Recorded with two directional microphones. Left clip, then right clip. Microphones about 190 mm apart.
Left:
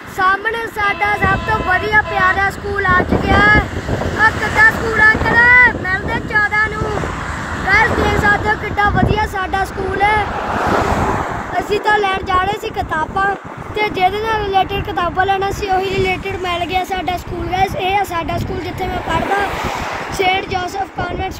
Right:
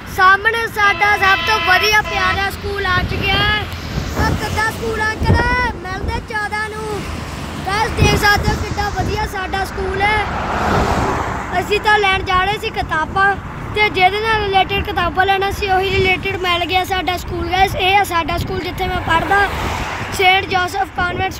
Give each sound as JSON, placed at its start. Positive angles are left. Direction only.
{"t": 0.2, "sound": "speech", "side_deg": -10}
{"t": 1.4, "sound": "speech", "side_deg": -30}
{"t": 1.9, "sound": "speech", "side_deg": -10}
{"t": 7.7, "sound": "speech", "side_deg": -15}
{"t": 10.5, "sound": "vehicle", "side_deg": -45}
{"t": 11.5, "sound": "speech", "side_deg": -10}